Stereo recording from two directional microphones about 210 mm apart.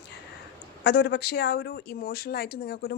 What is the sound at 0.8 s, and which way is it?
Speech, 50° left (ahead or behind).